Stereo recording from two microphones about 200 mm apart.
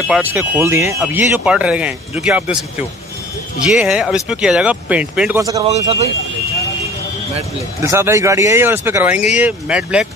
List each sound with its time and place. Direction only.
0.1 s speech: 10° right (ahead or behind)
3.6 s speech: 5° right (ahead or behind)
5.4 s speech: 15° right (ahead or behind)
5.7 s speech: 35° right (ahead or behind)
7.8 s speech: 15° right (ahead or behind)